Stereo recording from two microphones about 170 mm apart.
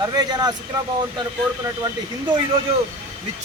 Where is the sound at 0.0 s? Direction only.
25° right (ahead or behind).